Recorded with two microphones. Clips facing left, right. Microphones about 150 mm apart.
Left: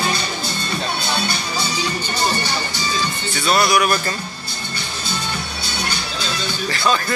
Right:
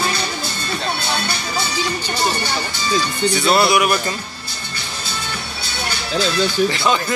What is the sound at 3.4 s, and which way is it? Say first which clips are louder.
Speech: right 1 dB; 25° right (ahead or behind).